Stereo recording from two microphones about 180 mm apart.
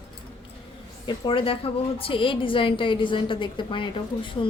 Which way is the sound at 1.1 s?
30° left (ahead or behind).